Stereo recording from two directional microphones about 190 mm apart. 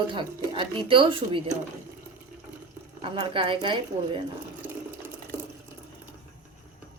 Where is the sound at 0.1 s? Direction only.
25° right (ahead or behind).